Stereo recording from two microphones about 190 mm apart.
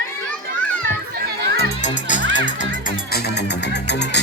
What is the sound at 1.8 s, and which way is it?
Music, 40° left (ahead or behind).